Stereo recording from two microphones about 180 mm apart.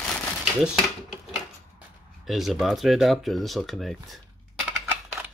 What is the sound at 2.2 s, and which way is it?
Speech, centre (ahead or behind).